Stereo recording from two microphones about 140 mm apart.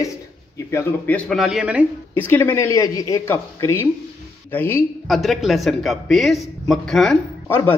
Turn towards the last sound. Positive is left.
turn(degrees=15)  # may be behind; listen again after turning